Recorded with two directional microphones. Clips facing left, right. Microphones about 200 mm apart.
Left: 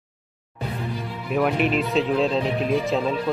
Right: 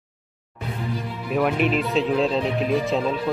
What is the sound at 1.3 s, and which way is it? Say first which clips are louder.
Speech: even; centre (ahead or behind).